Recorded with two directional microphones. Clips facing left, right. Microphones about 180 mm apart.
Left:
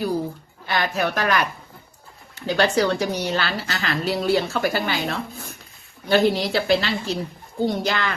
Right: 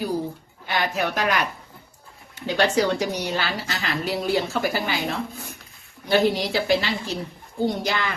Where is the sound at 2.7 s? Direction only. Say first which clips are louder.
Left 1 dB; 15° right (ahead or behind).